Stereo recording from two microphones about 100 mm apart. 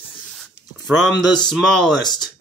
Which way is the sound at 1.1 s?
45° left (ahead or behind).